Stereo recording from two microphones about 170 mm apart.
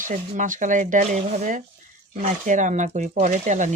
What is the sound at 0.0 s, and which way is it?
Speech, 50° right (ahead or behind).